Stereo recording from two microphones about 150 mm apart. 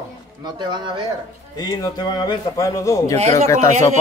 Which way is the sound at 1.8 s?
25° left (ahead or behind).